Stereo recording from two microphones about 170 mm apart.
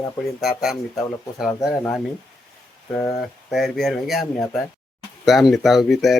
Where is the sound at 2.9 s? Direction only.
10° left (ahead or behind).